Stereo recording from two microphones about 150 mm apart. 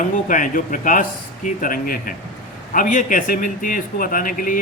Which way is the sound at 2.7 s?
60° left (ahead or behind).